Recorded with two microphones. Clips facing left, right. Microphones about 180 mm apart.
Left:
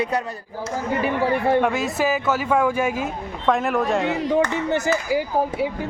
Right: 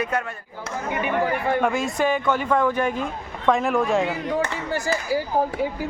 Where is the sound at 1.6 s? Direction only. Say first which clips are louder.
Left 1 dB; centre (ahead or behind).